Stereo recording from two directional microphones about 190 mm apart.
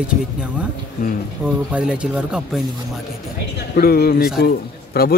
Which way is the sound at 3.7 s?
55° left (ahead or behind).